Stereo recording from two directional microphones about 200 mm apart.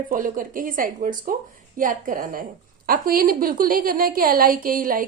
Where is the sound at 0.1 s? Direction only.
45° right (ahead or behind).